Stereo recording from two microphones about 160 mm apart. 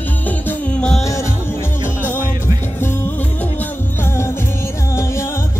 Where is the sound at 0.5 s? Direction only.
10° left (ahead or behind).